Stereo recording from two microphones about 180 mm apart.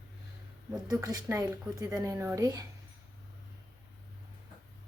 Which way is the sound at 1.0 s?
20° right (ahead or behind).